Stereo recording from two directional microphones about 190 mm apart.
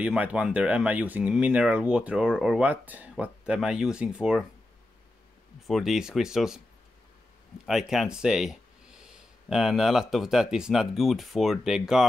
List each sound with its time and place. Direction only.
0.0 s speech: 5° right (ahead or behind)
5.7 s speech: centre (ahead or behind)
7.6 s speech: centre (ahead or behind)